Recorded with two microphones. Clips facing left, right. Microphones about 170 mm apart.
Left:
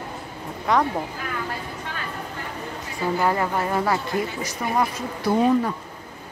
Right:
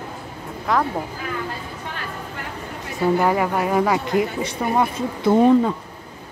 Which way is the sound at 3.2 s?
10° right (ahead or behind).